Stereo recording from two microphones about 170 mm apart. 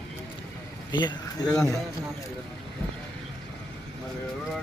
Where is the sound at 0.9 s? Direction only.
25° left (ahead or behind).